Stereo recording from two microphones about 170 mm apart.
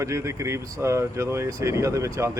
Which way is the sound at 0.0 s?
15° right (ahead or behind).